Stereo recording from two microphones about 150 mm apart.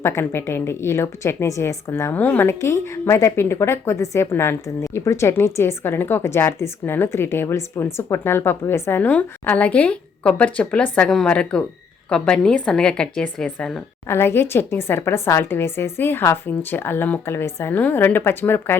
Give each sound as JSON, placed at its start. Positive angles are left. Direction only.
{"t": 0.0, "sound": "a woman's voice", "side_deg": 15}